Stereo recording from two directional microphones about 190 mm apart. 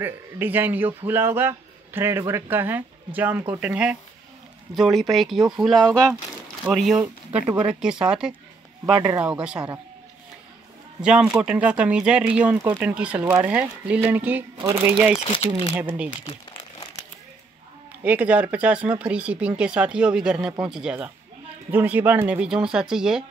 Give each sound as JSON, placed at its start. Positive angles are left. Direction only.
{"t": 0.0, "sound": "speech", "side_deg": -10}
{"t": 7.5, "sound": "speech", "side_deg": -5}
{"t": 8.9, "sound": "speech", "side_deg": -20}
{"t": 9.2, "sound": "speech", "side_deg": -5}
{"t": 11.0, "sound": "speech", "side_deg": -5}
{"t": 14.6, "sound": "speech", "side_deg": -25}
{"t": 14.9, "sound": "speech", "side_deg": -10}
{"t": 15.2, "sound": "speech", "side_deg": 30}
{"t": 18.0, "sound": "speech", "side_deg": -10}